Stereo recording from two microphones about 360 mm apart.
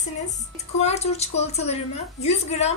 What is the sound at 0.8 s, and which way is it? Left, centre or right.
A woman's voice, centre.